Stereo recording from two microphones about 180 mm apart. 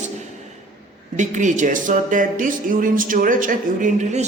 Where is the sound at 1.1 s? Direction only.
45° right (ahead or behind).